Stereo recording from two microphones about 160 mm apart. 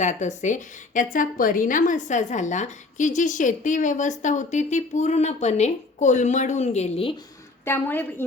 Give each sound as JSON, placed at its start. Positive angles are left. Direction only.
{"t": 0.0, "sound": "a woman's voice", "side_deg": 50}
{"t": 7.6, "sound": "a woman's voice", "side_deg": 15}